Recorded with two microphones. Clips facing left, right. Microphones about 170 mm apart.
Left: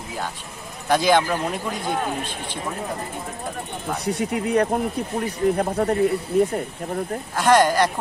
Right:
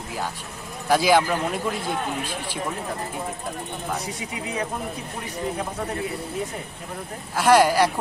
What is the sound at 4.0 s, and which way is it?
Speech, 65° left (ahead or behind).